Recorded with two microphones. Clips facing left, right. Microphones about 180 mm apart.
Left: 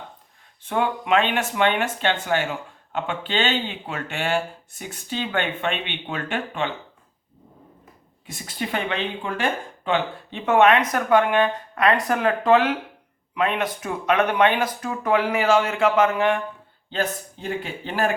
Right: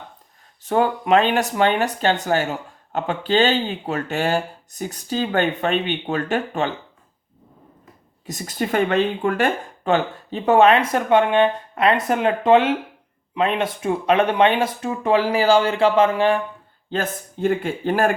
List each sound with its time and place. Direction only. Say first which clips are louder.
0.6 s speech: right 4 dB; 40° right (ahead or behind)
8.3 s speech: right 5 dB; 40° right (ahead or behind)
16.9 s speech: right 1 dB; 50° right (ahead or behind)